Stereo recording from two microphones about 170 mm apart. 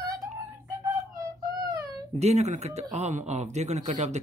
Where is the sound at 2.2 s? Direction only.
40° right (ahead or behind).